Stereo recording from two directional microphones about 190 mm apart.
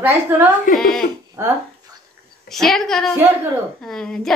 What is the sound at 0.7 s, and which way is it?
Speech, 45° left (ahead or behind).